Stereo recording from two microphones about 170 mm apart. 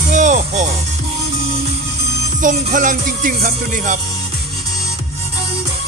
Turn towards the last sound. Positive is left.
turn(degrees=-55)  # may be behind; listen again after turning